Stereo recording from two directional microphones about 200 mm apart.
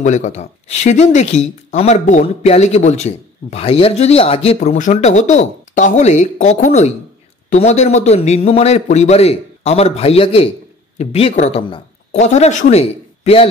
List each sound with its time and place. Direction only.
0.0 s speech: 35° left (ahead or behind)